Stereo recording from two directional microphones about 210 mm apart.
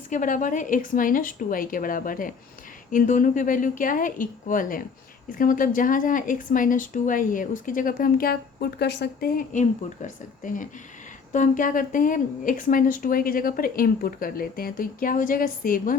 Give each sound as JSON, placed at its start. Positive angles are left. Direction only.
{"t": 0.1, "sound": "speech", "side_deg": 40}